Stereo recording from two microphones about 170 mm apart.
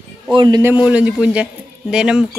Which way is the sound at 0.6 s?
10° right (ahead or behind).